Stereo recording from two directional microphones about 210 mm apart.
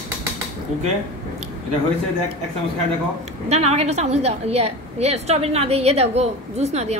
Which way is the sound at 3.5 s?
30° right (ahead or behind).